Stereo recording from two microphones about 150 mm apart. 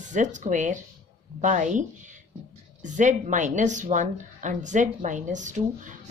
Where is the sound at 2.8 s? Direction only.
55° right (ahead or behind).